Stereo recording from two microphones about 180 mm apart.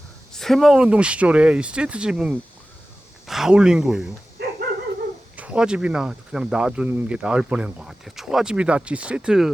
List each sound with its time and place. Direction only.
0.3 s speech: centre (ahead or behind)
4.4 s dog: 65° right (ahead or behind)
5.4 s speech: 5° right (ahead or behind)